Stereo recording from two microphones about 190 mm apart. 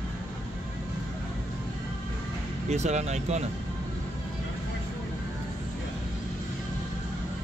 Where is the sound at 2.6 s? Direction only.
35° right (ahead or behind).